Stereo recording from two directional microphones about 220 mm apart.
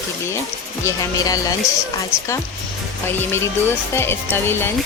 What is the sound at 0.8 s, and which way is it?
Speech, 15° left (ahead or behind).